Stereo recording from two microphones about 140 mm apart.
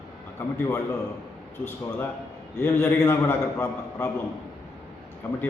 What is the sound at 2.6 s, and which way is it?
A man's voice, 15° left (ahead or behind).